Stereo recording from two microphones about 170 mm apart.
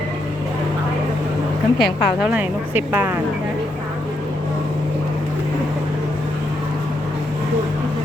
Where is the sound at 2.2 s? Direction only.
10° right (ahead or behind).